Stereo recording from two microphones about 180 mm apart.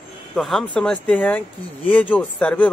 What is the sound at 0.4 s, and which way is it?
Speech, centre (ahead or behind).